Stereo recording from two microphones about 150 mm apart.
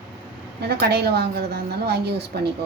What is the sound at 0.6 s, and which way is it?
A woman's voice, 90° right.